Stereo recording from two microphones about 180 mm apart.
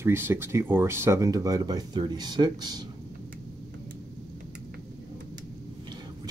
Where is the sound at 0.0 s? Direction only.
15° right (ahead or behind).